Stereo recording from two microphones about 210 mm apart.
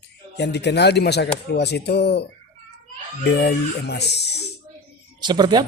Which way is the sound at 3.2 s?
50° left (ahead or behind).